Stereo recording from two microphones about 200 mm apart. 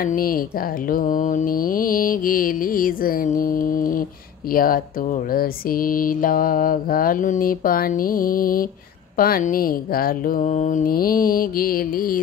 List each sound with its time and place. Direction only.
0.0 s speech: 45° left (ahead or behind)